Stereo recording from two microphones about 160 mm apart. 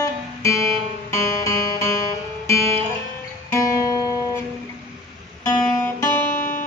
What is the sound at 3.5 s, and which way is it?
Guitar, 20° left (ahead or behind).